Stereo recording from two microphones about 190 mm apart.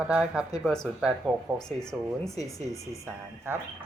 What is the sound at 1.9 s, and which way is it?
Speech, centre (ahead or behind).